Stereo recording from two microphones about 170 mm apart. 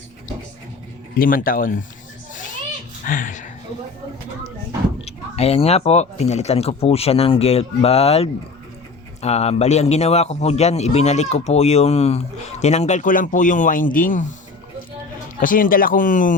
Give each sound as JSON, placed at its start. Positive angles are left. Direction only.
{"t": 1.1, "sound": "speech", "side_deg": 55}
{"t": 3.1, "sound": "speech", "side_deg": 50}
{"t": 5.0, "sound": "a man's voice", "side_deg": 35}
{"t": 15.4, "sound": "speech", "side_deg": 55}